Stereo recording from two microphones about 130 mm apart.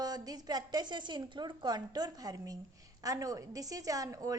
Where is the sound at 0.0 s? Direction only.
30° right (ahead or behind).